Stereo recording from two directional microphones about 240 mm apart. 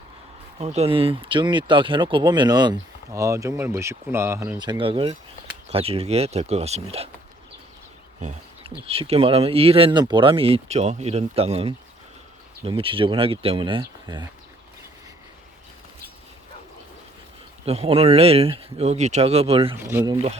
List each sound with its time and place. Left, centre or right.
0.6 s speech: right
8.2 s bird: right
8.9 s speech: right
17.7 s speech: right
19.7 s speech: centre